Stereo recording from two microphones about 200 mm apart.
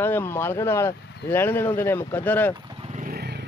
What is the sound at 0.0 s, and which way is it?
A man's voice, 10° left (ahead or behind).